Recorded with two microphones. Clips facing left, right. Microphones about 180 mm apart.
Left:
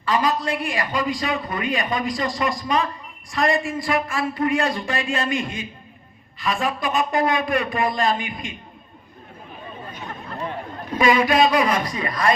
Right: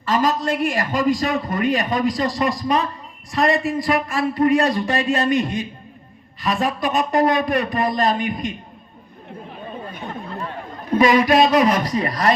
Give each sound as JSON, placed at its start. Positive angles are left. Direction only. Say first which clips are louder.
{"t": 0.0, "sound": "a man's voice", "louder": "right 2 dB", "side_deg": -45}
{"t": 10.9, "sound": "a man's voice", "louder": "right 3 dB", "side_deg": -40}